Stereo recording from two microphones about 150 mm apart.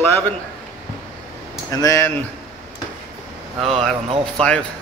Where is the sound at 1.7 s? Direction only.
20° left (ahead or behind).